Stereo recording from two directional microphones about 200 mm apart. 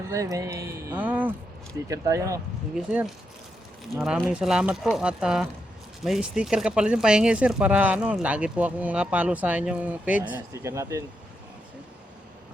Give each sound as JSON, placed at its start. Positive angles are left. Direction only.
{"t": 0.1, "sound": "speech", "side_deg": -15}